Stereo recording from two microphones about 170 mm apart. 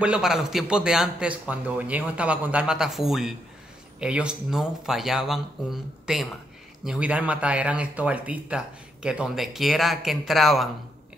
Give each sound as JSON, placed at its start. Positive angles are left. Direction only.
{"t": 0.0, "sound": "speech", "side_deg": -5}